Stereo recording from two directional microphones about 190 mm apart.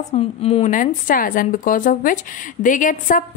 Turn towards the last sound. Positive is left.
turn(degrees=45)  # may be behind; listen again after turning